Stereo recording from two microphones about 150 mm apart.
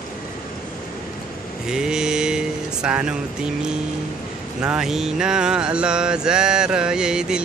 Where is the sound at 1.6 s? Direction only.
5° right (ahead or behind).